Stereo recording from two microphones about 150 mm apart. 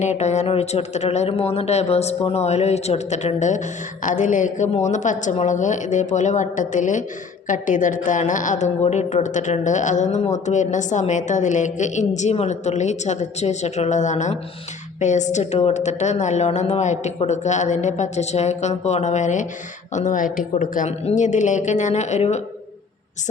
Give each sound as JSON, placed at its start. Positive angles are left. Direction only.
{"t": 0.0, "sound": "a woman's voice", "side_deg": 50}
{"t": 21.0, "sound": "a woman's voice", "side_deg": 50}